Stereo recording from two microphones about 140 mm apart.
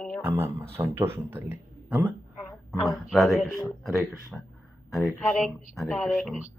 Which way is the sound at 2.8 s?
Centre (ahead or behind).